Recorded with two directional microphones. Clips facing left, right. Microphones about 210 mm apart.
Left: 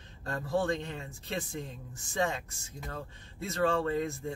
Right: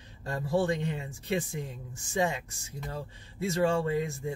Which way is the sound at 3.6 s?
15° right (ahead or behind).